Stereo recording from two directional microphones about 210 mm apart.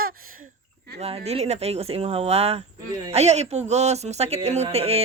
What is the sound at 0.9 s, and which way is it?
Speech, 30° right (ahead or behind).